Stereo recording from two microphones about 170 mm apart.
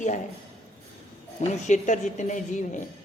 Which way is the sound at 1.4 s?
45° left (ahead or behind).